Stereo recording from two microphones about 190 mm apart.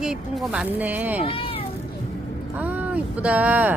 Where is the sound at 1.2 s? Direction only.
30° left (ahead or behind).